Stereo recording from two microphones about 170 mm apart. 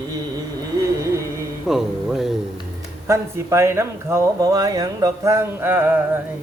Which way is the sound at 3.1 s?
15° right (ahead or behind).